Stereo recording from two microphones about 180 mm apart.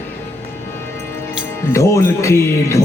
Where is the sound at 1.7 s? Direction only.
15° left (ahead or behind).